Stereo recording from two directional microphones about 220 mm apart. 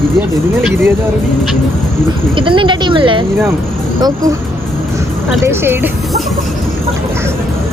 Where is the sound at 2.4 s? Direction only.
20° right (ahead or behind).